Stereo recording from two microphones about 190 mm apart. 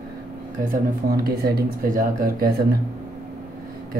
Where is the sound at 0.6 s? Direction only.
50° right (ahead or behind).